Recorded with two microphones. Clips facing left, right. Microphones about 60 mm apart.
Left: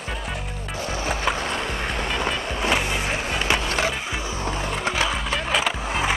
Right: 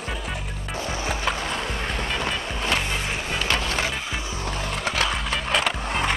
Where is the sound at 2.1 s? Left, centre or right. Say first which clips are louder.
Left 2 dB; centre.